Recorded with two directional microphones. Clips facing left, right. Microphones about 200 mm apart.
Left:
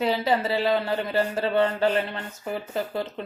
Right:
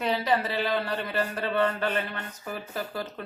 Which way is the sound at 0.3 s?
25° left (ahead or behind).